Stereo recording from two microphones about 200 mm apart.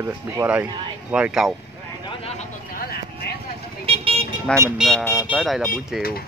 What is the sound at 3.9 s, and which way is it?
Vehicle, 30° right (ahead or behind).